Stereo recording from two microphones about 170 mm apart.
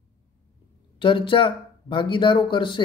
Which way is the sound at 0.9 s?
30° left (ahead or behind).